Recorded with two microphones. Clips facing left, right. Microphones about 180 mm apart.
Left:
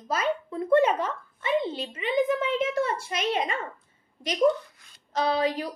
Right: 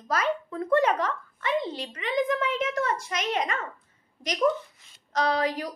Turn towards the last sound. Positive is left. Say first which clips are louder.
# left 1 dB
turn(degrees=25)  # may be behind; listen again after turning